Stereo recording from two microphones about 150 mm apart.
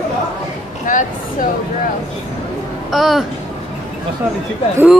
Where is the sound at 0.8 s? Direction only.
60° left (ahead or behind).